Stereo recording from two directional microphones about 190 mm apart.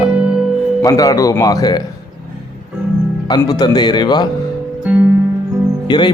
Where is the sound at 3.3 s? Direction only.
20° left (ahead or behind).